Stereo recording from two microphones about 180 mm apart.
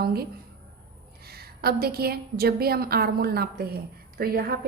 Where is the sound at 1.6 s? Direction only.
60° right (ahead or behind).